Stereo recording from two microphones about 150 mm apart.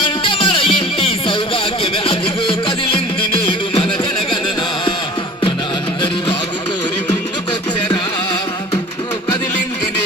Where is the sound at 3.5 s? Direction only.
35° left (ahead or behind).